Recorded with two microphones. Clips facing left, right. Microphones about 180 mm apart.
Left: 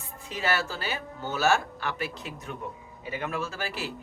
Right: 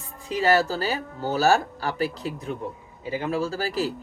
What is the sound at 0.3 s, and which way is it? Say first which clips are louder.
Speech: right 8 dB; 35° right (ahead or behind).